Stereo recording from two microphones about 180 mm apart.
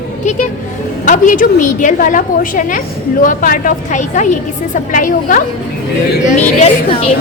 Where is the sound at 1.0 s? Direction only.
45° left (ahead or behind).